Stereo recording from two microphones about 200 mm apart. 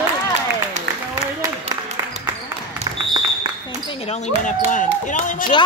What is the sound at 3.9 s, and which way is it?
Speech, 30° left (ahead or behind).